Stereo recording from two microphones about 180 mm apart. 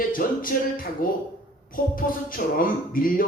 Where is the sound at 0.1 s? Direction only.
50° left (ahead or behind).